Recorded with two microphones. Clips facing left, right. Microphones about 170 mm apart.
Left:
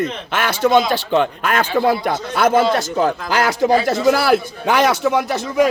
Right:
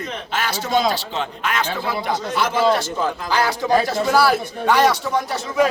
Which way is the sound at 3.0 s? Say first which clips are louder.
Left 3 dB; 80° left.